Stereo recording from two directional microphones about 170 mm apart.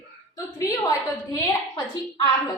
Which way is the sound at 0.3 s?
20° left (ahead or behind).